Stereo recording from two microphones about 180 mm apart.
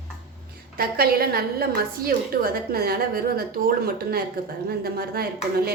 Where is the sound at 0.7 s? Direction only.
55° right (ahead or behind).